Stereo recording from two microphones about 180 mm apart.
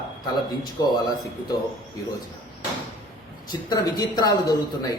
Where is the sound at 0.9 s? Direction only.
20° left (ahead or behind).